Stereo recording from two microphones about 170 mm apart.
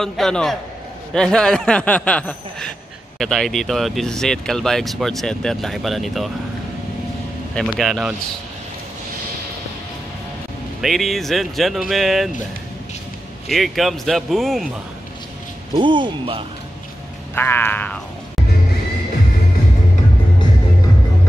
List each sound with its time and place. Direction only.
0.0 s speech: 5° left (ahead or behind)
7.5 s speech: 5° left (ahead or behind)
10.8 s speech: centre (ahead or behind)
13.5 s speech: centre (ahead or behind)
15.7 s speech: 30° right (ahead or behind)
17.4 s a sound: 10° left (ahead or behind)